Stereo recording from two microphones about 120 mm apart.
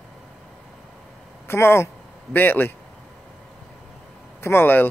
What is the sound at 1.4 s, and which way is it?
Speech, 20° left (ahead or behind).